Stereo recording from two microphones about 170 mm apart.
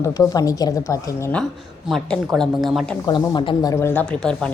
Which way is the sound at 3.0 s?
25° left (ahead or behind).